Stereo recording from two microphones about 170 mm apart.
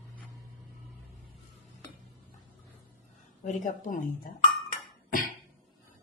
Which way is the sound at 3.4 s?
50° left (ahead or behind).